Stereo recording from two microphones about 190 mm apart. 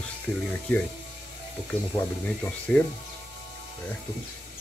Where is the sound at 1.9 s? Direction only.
10° left (ahead or behind).